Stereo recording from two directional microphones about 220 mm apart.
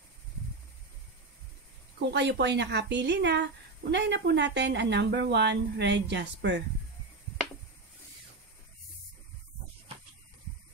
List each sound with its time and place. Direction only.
2.0 s speech: 50° right (ahead or behind)